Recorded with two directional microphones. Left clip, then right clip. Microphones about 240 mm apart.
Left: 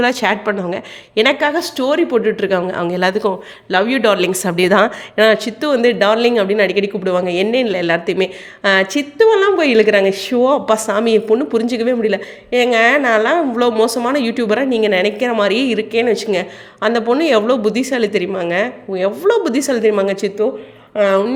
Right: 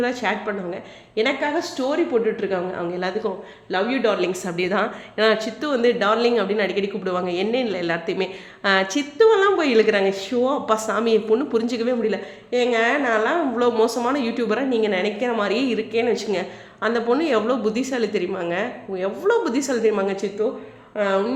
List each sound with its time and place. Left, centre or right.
0.0 s a woman's voice: left